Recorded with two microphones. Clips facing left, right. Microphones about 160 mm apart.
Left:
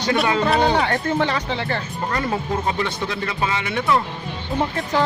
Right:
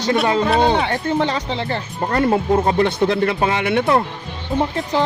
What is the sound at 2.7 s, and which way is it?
Speech, 50° right (ahead or behind).